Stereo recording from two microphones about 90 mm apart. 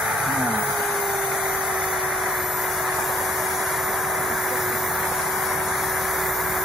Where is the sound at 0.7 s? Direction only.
Centre (ahead or behind).